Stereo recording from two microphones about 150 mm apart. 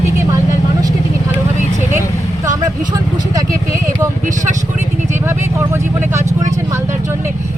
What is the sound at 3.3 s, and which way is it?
Speech, 20° right (ahead or behind).